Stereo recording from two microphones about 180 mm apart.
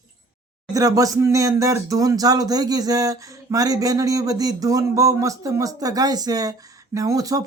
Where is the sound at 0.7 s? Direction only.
20° right (ahead or behind).